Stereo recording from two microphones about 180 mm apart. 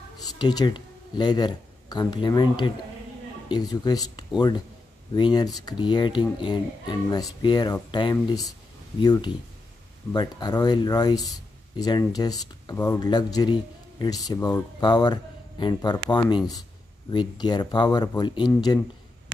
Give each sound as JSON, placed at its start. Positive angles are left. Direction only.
{"t": 0.4, "sound": "speech", "side_deg": 25}